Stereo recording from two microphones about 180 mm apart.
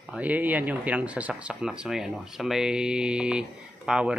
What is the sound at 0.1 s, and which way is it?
Speech, 10° right (ahead or behind).